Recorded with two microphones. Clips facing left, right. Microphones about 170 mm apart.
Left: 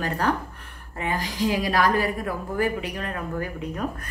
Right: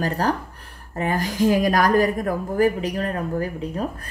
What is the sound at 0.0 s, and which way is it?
A woman's voice, 35° right (ahead or behind).